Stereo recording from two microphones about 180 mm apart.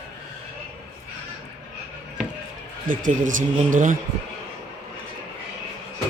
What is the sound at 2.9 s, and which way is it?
A man's voice, 45° right (ahead or behind).